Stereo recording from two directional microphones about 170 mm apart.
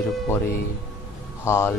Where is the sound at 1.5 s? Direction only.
15° left (ahead or behind).